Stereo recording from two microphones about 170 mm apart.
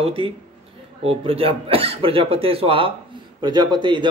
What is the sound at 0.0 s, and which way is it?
Speech, 35° right (ahead or behind).